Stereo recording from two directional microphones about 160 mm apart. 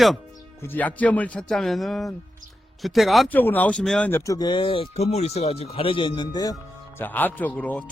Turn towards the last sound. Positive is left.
turn(degrees=10)  # may be behind; listen again after turning